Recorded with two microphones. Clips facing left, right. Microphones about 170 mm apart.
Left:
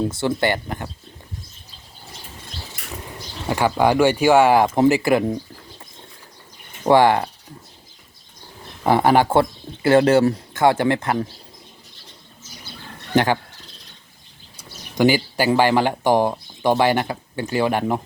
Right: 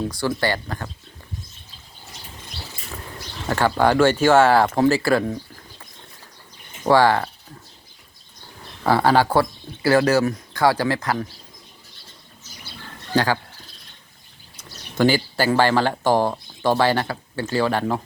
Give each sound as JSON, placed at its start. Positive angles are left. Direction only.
{"t": 0.1, "sound": "speech", "side_deg": 25}
{"t": 2.8, "sound": "bird flight", "side_deg": 80}
{"t": 3.4, "sound": "speech", "side_deg": 15}
{"t": 6.8, "sound": "speech", "side_deg": 20}
{"t": 8.8, "sound": "speech", "side_deg": 20}
{"t": 13.1, "sound": "speech", "side_deg": 20}
{"t": 14.5, "sound": "speech", "side_deg": 10}